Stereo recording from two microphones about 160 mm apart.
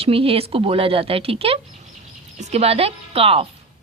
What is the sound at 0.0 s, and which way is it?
A woman's voice, 35° right (ahead or behind).